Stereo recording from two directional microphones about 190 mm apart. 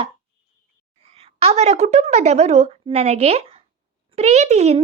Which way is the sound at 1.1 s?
30° right (ahead or behind).